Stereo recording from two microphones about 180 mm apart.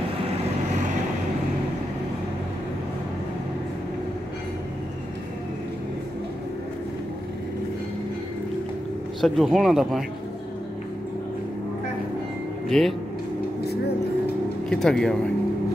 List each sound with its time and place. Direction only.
9.2 s speech: centre (ahead or behind)
12.6 s speech: centre (ahead or behind)
13.7 s vehicle: 65° left (ahead or behind)
14.7 s speech: 5° left (ahead or behind)